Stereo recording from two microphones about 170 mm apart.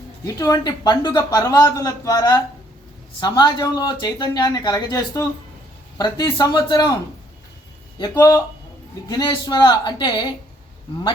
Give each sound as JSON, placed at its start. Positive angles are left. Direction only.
{"t": 0.3, "sound": "speech", "side_deg": 20}
{"t": 7.9, "sound": "speech", "side_deg": 20}